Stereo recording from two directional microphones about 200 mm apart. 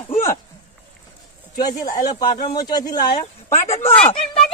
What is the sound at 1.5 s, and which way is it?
Speech, 20° left (ahead or behind).